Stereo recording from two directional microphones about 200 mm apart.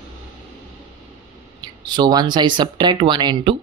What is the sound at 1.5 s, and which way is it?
Speech, 20° right (ahead or behind).